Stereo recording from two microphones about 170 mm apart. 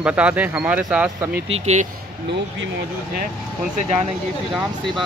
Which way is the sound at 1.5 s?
40° right (ahead or behind).